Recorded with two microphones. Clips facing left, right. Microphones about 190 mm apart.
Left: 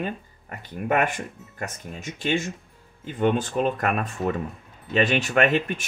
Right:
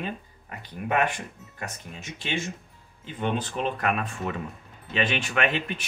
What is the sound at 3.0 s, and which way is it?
Speech, 50° left (ahead or behind).